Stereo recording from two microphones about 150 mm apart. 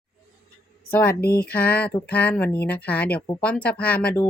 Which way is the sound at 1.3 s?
90° left.